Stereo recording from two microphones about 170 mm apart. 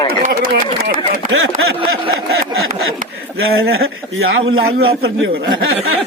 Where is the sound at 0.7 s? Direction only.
70° right (ahead or behind).